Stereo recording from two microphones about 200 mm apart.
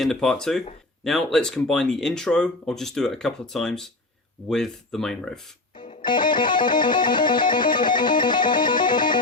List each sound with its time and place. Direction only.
0.0 s speech: centre (ahead or behind)
6.0 s music: 25° left (ahead or behind)